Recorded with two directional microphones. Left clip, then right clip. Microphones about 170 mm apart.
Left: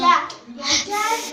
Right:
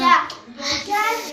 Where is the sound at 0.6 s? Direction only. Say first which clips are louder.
Left 3 dB; 20° left (ahead or behind).